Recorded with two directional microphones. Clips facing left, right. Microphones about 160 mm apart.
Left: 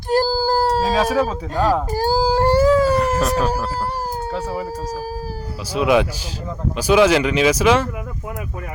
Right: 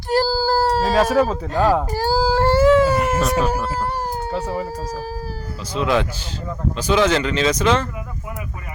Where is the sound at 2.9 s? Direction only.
5° right (ahead or behind).